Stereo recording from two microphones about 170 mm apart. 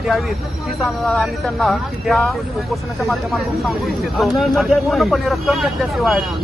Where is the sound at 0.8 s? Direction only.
Centre (ahead or behind).